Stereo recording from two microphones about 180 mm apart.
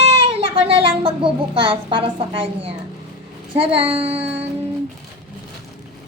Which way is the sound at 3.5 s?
30° right (ahead or behind).